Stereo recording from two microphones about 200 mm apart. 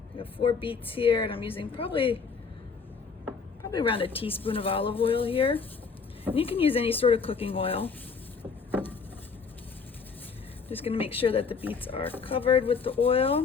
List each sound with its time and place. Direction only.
0.2 s a woman's voice: 25° left (ahead or behind)
3.6 s a woman's voice: 20° left (ahead or behind)
10.8 s a woman's voice: 30° left (ahead or behind)